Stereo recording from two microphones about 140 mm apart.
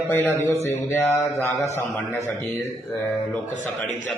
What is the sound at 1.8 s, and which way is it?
A man's voice, 15° left (ahead or behind).